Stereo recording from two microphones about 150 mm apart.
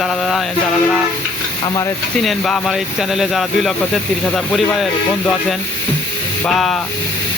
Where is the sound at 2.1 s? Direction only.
Centre (ahead or behind).